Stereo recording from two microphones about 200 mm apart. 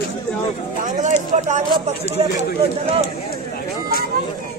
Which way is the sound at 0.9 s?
40° right (ahead or behind).